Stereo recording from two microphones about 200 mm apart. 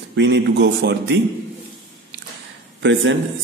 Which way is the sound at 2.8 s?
65° right (ahead or behind).